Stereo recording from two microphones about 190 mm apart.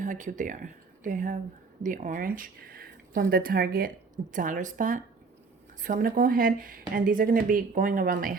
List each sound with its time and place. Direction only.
0.0 s speech: 40° right (ahead or behind)